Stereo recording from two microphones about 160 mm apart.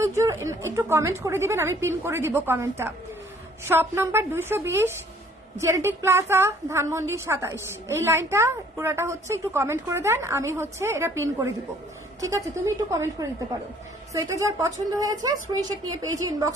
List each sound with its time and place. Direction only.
0.0 s a woman's voice: 20° right (ahead or behind)